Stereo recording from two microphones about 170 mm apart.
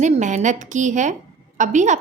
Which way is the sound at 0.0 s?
45° right (ahead or behind).